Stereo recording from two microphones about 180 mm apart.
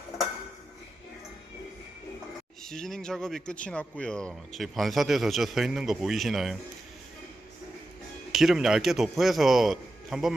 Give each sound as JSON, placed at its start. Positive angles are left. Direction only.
{"t": 2.6, "sound": "speech", "side_deg": 0}
{"t": 8.3, "sound": "speech", "side_deg": 0}